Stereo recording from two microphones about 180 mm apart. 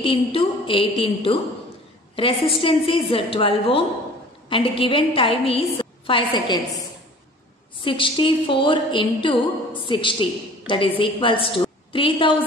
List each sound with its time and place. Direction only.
0.0 s a woman's voice: 30° left (ahead or behind)
7.8 s a woman's voice: 30° left (ahead or behind)